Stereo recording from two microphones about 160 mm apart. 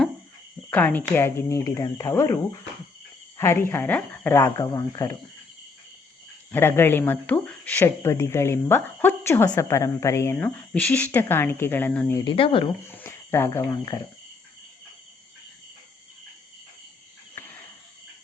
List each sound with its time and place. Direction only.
0.7 s speech: 10° left (ahead or behind)
6.5 s speech: 15° left (ahead or behind)
12.2 s speech: 30° left (ahead or behind)
12.9 s speech: 15° left (ahead or behind)
17.3 s cricket: 10° left (ahead or behind)